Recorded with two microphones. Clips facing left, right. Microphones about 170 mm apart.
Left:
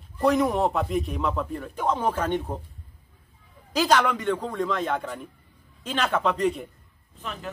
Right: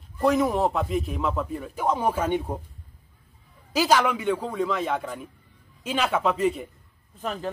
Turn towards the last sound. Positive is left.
turn(degrees=-40)  # may be behind; listen again after turning